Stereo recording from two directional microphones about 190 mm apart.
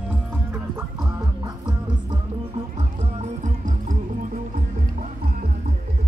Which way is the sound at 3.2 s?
40° right (ahead or behind).